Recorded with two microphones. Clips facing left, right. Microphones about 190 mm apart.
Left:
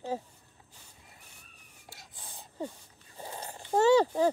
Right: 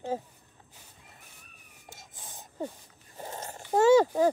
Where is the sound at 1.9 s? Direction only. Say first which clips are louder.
Right 2 dB; 20° right (ahead or behind).